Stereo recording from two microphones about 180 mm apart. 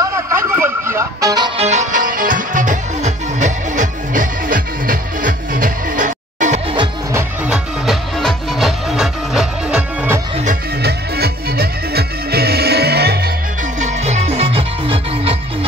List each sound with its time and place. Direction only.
0.0 s music: 15° right (ahead or behind)
1.6 s music: 40° right (ahead or behind)
7.4 s music: 5° right (ahead or behind)
10.8 s music: 60° right (ahead or behind)
13.7 s music: 40° right (ahead or behind)